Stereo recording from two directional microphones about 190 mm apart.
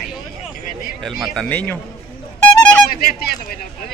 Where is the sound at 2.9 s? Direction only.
50° left (ahead or behind).